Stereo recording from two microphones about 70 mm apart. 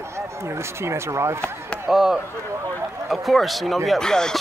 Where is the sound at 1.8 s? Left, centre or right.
Centre.